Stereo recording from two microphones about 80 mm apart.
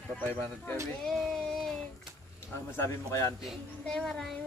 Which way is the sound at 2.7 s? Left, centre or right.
Left.